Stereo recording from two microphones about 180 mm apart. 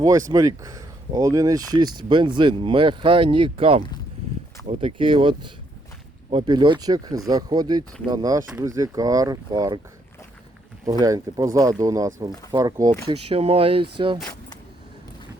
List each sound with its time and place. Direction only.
0.0 s speech: 20° right (ahead or behind)
11.0 s speech: 20° right (ahead or behind)
13.1 s speech: 30° right (ahead or behind)